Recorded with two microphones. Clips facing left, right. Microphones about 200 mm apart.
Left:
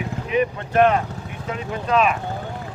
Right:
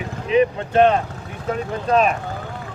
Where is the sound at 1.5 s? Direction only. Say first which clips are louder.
Right 2 dB; 40° right (ahead or behind).